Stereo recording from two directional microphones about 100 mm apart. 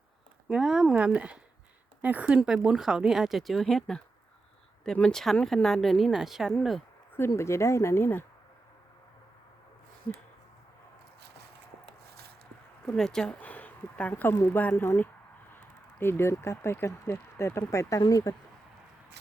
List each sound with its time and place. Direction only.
0.4 s speech: 5° right (ahead or behind)
7.3 s speech: 30° left (ahead or behind)
13.0 s speech: 5° left (ahead or behind)
13.4 s speech: 15° left (ahead or behind); by 18.3 s 35° left (ahead or behind)